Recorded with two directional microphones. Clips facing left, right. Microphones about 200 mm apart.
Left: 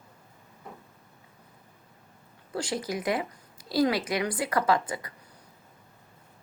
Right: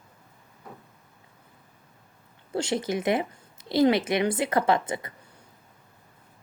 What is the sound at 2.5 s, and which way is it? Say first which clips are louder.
Speech: right 4 dB; 25° right (ahead or behind).